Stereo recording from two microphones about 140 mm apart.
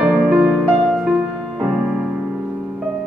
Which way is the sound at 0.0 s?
10° right (ahead or behind).